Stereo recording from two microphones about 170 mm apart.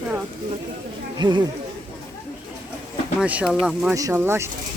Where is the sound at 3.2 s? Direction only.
5° right (ahead or behind).